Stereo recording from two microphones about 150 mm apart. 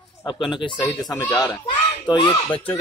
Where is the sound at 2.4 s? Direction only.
10° left (ahead or behind).